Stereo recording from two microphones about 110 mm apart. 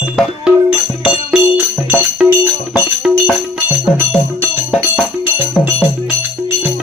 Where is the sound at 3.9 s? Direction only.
20° right (ahead or behind).